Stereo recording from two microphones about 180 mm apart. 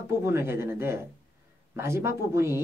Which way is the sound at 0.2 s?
15° right (ahead or behind).